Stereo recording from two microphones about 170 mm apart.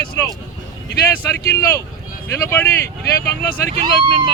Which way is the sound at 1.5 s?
15° left (ahead or behind).